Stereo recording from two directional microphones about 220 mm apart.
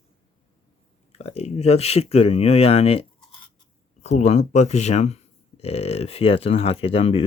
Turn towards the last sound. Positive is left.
turn(degrees=25)  # may be behind; listen again after turning